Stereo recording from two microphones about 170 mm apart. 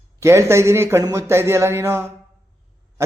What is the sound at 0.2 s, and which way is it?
A man's voice, 15° right (ahead or behind).